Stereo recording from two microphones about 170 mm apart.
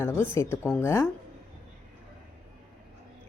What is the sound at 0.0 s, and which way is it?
A woman's voice, 15° left (ahead or behind).